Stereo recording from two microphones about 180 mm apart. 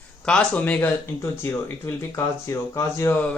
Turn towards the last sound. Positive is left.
turn(degrees=10)  # may be behind; listen again after turning